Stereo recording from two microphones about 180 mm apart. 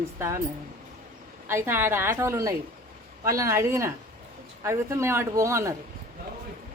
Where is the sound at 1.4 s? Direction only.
15° right (ahead or behind).